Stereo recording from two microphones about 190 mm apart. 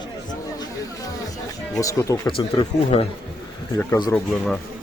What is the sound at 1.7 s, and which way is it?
Speech, 15° left (ahead or behind).